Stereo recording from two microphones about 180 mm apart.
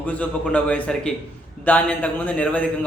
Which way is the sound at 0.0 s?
10° left (ahead or behind).